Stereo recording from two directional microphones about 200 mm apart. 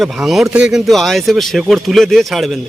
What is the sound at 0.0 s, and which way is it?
Speech, centre (ahead or behind).